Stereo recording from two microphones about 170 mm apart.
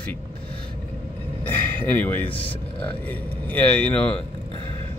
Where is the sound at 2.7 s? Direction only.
10° left (ahead or behind).